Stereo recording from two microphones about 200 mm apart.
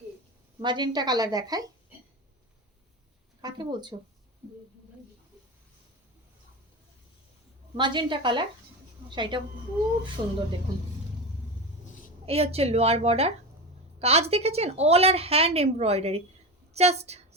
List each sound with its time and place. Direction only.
0.6 s a woman's voice: 20° right (ahead or behind)
3.4 s a woman's voice: 20° right (ahead or behind)
7.8 s a woman's voice: 25° right (ahead or behind)
12.2 s a woman's voice: 30° right (ahead or behind)